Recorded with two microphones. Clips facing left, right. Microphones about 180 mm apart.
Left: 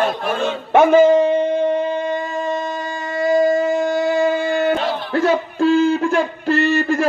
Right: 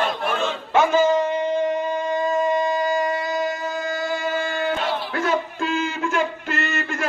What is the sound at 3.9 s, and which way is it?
Male singing, 60° left (ahead or behind).